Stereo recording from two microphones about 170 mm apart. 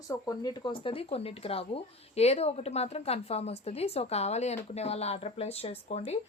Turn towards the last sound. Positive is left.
turn(degrees=40)  # may be behind; listen again after turning